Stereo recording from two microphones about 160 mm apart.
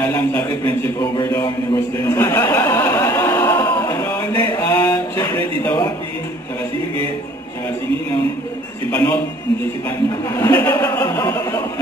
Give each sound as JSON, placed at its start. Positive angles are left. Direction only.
{"t": 0.0, "sound": "a man's voice", "side_deg": 15}
{"t": 2.0, "sound": "a sound", "side_deg": 15}
{"t": 8.9, "sound": "speech", "side_deg": 5}
{"t": 10.3, "sound": "speech", "side_deg": 10}
{"t": 10.8, "sound": "music", "side_deg": 20}